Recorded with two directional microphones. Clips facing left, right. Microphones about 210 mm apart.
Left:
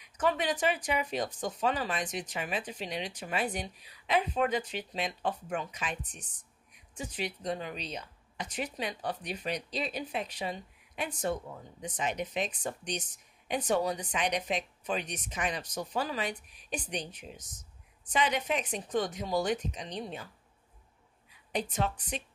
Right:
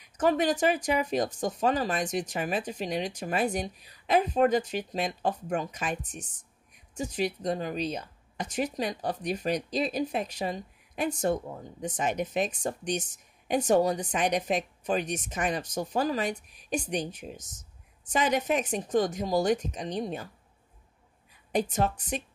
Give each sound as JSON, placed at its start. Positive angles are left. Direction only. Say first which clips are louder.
{"t": 0.0, "sound": "speech", "louder": "right 5 dB", "side_deg": -45}
{"t": 21.5, "sound": "speech", "louder": "right 5 dB", "side_deg": -45}